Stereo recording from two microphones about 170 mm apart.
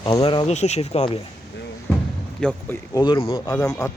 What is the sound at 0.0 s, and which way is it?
Speech, 30° left (ahead or behind).